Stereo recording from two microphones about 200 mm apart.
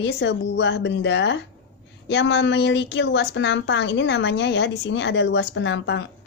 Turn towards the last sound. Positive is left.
turn(degrees=65)  # may be behind; listen again after turning